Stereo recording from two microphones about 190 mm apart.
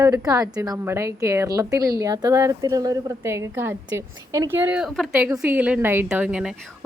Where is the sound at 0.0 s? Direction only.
20° right (ahead or behind).